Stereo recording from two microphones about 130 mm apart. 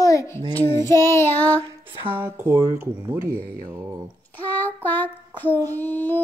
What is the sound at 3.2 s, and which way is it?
Speech, 90° right.